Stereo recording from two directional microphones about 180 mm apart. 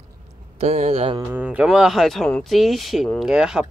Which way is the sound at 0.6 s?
35° right (ahead or behind).